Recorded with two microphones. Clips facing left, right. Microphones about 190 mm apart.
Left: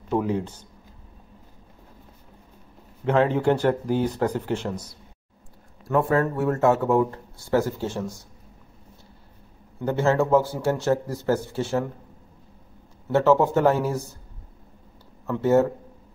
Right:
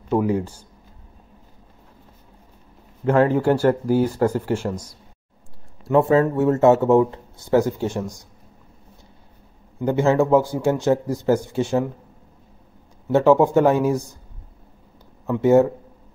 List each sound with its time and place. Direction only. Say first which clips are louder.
0.1 s a man's voice: right 4 dB; 5° right (ahead or behind)
3.1 s a man's voice: right 3 dB; 5° right (ahead or behind)
5.9 s speech: right 5 dB; 25° right (ahead or behind)
9.8 s a man's voice: right 4 dB; 15° right (ahead or behind)
13.1 s a man's voice: right 4 dB; 15° right (ahead or behind)
15.2 s a man's voice: right 4 dB; 15° right (ahead or behind)